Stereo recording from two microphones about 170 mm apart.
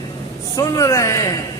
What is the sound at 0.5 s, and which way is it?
Speech, 20° left (ahead or behind).